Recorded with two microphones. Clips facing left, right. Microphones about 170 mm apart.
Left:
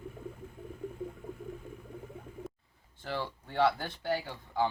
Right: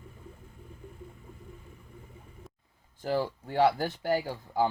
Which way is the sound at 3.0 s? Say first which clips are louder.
Right 7 dB; 40° right (ahead or behind).